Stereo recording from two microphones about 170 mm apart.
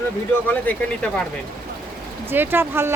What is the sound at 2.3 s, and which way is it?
Speech, 10° right (ahead or behind).